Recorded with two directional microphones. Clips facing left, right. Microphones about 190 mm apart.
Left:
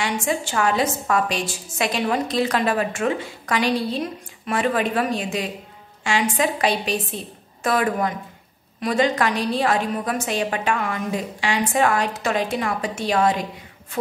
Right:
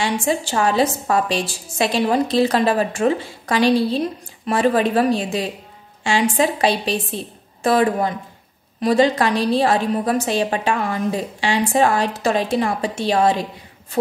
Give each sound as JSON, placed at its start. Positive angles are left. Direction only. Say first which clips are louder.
{"t": 0.0, "sound": "a woman's voice", "louder": "right 3 dB", "side_deg": -30}